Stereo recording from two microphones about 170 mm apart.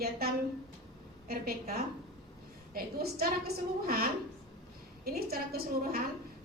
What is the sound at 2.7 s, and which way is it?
A woman's voice, 65° right (ahead or behind).